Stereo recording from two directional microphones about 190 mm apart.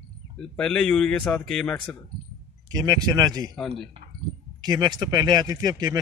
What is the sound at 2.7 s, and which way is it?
Speech, 20° right (ahead or behind).